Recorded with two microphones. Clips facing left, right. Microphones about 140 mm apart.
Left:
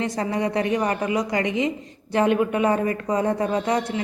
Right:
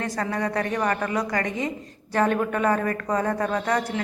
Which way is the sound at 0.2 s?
20° left (ahead or behind).